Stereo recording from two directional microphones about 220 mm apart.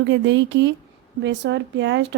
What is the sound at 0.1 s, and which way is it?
Speech, 55° right (ahead or behind).